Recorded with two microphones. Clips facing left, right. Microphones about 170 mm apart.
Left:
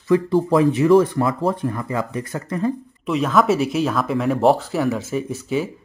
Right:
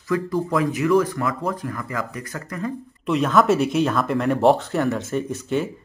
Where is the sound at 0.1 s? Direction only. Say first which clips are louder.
Left 6 dB; 30° left (ahead or behind).